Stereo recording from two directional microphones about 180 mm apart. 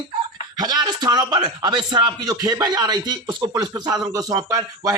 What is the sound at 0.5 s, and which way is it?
A man's voice, 20° right (ahead or behind).